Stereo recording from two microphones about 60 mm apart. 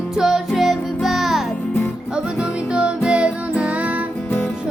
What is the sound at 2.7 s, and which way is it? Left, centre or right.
Music, centre.